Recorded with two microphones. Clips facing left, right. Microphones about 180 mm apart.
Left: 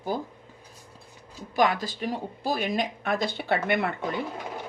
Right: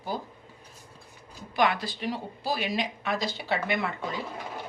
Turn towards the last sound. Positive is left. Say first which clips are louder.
# left 3 dB
turn(degrees=55)  # may be behind; listen again after turning